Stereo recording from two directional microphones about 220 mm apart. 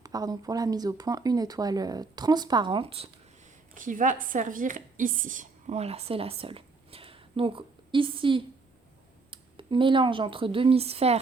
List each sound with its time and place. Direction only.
0.0 s speech: 15° right (ahead or behind)
3.8 s a woman's voice: 35° right (ahead or behind)